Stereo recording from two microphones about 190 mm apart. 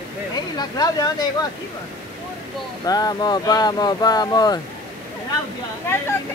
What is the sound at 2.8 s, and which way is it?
Speech, 20° left (ahead or behind).